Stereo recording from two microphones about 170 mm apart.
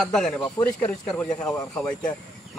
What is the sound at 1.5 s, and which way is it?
Speech, 20° left (ahead or behind).